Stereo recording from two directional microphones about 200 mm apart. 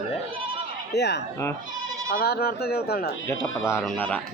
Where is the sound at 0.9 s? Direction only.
55° left (ahead or behind).